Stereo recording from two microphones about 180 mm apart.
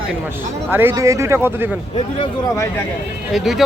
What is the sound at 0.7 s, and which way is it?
Speech, 10° right (ahead or behind).